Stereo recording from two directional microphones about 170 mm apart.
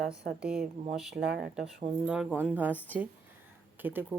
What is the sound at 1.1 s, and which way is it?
Speech, 70° right (ahead or behind).